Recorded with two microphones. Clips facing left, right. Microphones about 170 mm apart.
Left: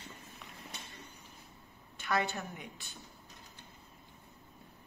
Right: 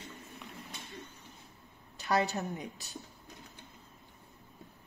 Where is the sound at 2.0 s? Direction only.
35° right (ahead or behind).